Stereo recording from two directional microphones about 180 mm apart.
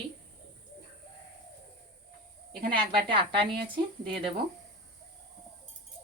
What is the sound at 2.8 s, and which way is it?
Speech, 30° right (ahead or behind).